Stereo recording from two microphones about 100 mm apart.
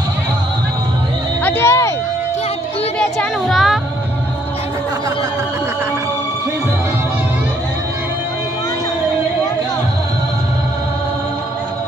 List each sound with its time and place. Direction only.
1.4 s speech: 25° left (ahead or behind)
3.2 s music: centre (ahead or behind)